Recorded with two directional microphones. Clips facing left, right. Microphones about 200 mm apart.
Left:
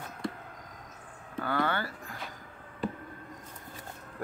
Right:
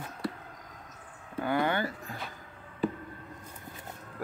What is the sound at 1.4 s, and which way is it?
Speech, 15° right (ahead or behind).